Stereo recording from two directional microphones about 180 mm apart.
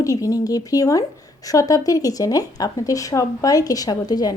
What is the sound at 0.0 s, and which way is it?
A woman's voice, 20° left (ahead or behind).